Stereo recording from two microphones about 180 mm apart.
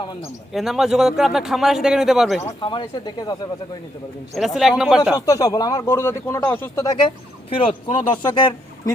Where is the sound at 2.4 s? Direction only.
30° left (ahead or behind).